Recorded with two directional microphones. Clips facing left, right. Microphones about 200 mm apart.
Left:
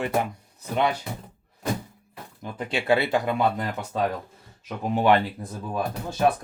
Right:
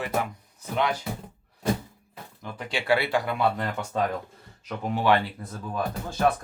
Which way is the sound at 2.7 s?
20° left (ahead or behind).